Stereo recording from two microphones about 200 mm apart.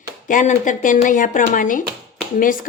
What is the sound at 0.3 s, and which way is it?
A woman's voice, 40° left (ahead or behind).